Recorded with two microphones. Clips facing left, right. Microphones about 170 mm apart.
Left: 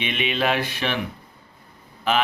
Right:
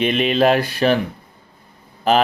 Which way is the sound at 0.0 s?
40° right (ahead or behind).